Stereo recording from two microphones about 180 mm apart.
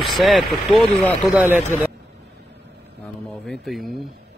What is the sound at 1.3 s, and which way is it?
Speech, 10° right (ahead or behind).